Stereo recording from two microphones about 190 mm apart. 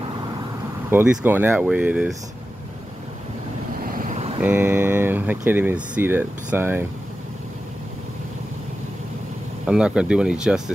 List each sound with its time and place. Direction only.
0.8 s speech: 10° right (ahead or behind)
3.8 s vehicle: 45° right (ahead or behind)
4.4 s speech: 10° right (ahead or behind)
9.7 s speech: 5° right (ahead or behind)